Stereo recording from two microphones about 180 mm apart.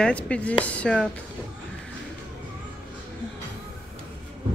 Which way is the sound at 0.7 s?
5° left (ahead or behind).